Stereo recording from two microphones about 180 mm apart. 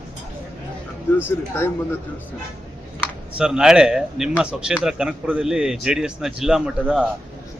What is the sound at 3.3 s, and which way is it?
A man's voice, 5° right (ahead or behind).